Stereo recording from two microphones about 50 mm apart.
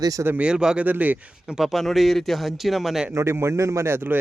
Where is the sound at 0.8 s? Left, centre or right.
Right.